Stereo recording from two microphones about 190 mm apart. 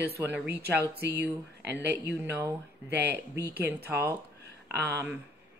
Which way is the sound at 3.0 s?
60° right (ahead or behind).